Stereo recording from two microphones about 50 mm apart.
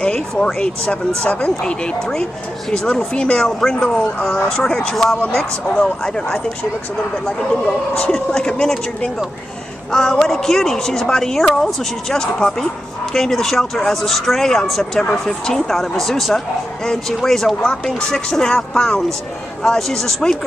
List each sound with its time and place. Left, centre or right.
0.0 s a sound: centre
0.6 s speech: centre
7.6 s speech: left; by 20.3 s centre